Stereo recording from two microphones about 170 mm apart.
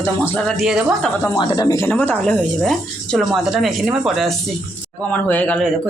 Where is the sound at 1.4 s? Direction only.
20° left (ahead or behind); by 4.4 s centre (ahead or behind).